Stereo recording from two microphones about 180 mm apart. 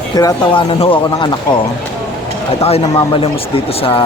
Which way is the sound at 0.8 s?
30° left (ahead or behind).